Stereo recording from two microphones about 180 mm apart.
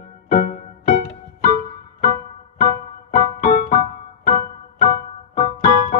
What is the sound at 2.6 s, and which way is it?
Music, 50° left (ahead or behind).